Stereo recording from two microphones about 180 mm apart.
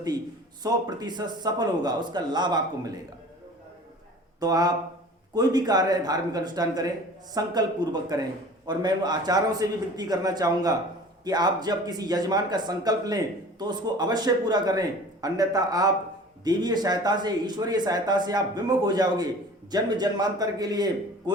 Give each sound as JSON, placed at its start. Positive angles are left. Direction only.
{"t": 0.6, "sound": "speech", "side_deg": -20}
{"t": 4.4, "sound": "speech", "side_deg": -20}